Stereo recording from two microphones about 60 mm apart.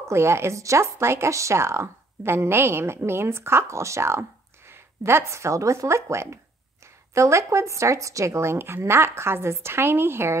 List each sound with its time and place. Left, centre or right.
0.0 s speech: right